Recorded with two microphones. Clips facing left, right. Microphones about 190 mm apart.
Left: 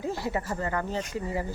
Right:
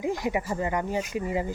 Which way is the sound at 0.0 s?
15° right (ahead or behind).